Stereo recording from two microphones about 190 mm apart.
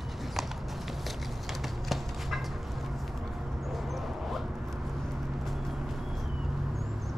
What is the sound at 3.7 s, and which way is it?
Dog, centre (ahead or behind).